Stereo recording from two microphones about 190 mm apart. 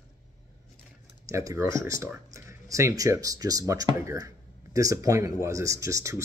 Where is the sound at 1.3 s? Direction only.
15° right (ahead or behind).